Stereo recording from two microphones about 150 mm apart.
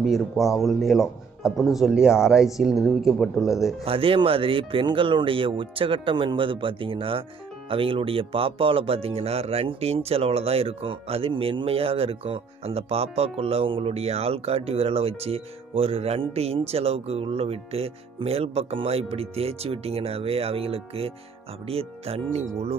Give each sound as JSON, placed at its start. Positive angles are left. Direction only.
{"t": 0.0, "sound": "speech", "side_deg": 0}
{"t": 3.8, "sound": "speech", "side_deg": -40}